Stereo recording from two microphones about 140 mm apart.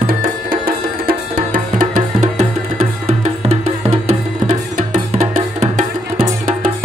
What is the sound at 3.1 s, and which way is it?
Music, 50° right (ahead or behind).